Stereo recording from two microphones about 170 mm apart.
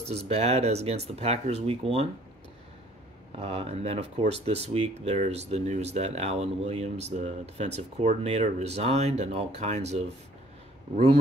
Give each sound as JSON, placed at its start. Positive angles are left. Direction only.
{"t": 0.1, "sound": "speech", "side_deg": -40}
{"t": 3.3, "sound": "speech", "side_deg": -35}